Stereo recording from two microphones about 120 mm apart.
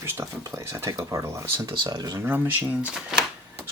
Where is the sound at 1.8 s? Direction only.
35° right (ahead or behind).